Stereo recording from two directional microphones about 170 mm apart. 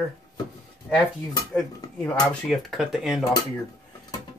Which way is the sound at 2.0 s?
5° left (ahead or behind).